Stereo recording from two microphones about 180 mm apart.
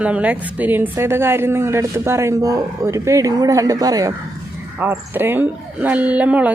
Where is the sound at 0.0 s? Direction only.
5° right (ahead or behind).